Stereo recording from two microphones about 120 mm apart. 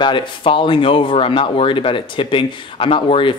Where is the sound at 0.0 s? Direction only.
45° left (ahead or behind).